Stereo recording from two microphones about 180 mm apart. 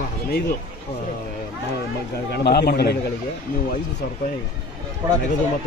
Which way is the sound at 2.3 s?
65° left (ahead or behind).